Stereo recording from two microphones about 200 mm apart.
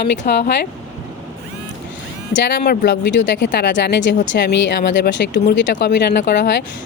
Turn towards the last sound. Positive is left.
turn(degrees=60)  # may be behind; listen again after turning